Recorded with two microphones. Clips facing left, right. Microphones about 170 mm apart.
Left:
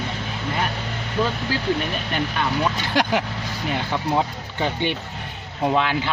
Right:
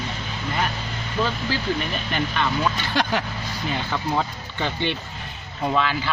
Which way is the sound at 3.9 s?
15° left (ahead or behind).